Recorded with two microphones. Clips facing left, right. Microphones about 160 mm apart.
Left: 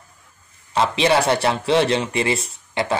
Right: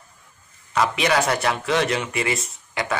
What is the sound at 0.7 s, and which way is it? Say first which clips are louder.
A man's voice: left 3 dB; 30° left (ahead or behind).